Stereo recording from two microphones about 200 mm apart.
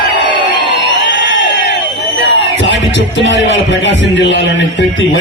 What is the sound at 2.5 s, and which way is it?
Speech, 70° left (ahead or behind).